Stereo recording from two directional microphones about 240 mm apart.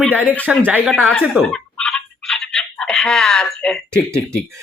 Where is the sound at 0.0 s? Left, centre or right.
Centre.